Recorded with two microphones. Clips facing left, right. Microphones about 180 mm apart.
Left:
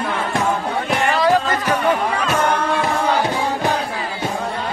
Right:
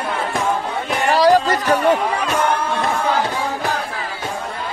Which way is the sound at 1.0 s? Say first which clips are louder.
Right 4 dB; 35° right (ahead or behind).